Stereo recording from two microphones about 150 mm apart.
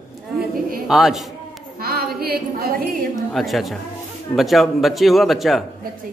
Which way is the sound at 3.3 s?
Centre (ahead or behind).